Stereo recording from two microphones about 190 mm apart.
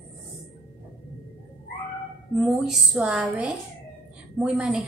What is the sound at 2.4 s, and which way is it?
A woman's voice, centre (ahead or behind).